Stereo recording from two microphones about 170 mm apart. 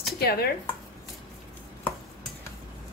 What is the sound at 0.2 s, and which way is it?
Speech, 65° left (ahead or behind).